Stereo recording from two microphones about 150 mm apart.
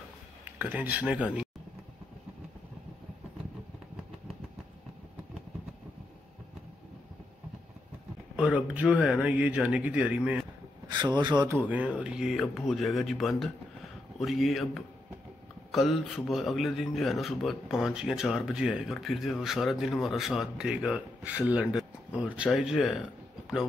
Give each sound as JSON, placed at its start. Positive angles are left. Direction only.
{"t": 0.6, "sound": "speech", "side_deg": -10}
{"t": 8.4, "sound": "speech", "side_deg": -10}
{"t": 10.9, "sound": "speech", "side_deg": -30}
{"t": 11.4, "sound": "a man's voice", "side_deg": -15}